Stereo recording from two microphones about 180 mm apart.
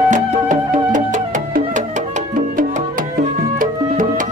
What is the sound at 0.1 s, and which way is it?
Music, 45° right (ahead or behind).